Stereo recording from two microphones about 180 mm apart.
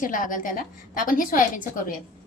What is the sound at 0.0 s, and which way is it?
A woman's voice, 50° left (ahead or behind).